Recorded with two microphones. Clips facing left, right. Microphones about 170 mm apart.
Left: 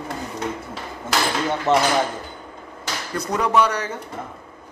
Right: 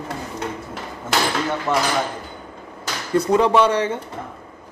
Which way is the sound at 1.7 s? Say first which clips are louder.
Left 4 dB; 20° left (ahead or behind).